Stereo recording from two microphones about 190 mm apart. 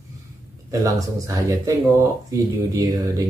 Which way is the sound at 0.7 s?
15° right (ahead or behind).